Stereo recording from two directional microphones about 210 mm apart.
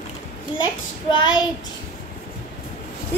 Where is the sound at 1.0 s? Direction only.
20° left (ahead or behind).